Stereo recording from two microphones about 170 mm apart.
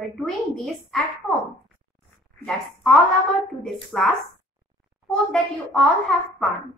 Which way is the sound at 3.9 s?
Centre (ahead or behind).